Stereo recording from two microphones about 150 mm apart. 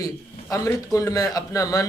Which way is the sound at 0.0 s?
25° left (ahead or behind).